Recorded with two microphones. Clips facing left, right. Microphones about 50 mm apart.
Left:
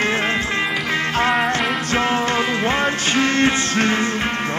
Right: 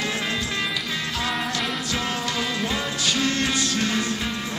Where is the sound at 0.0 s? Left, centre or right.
Left.